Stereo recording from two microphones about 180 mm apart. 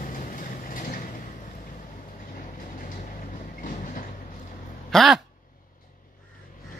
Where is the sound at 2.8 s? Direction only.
50° left (ahead or behind).